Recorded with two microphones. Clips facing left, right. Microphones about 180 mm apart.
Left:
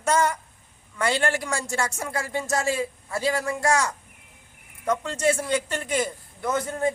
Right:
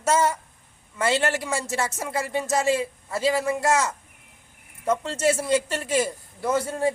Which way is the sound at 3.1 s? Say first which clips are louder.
Right 4 dB; centre (ahead or behind).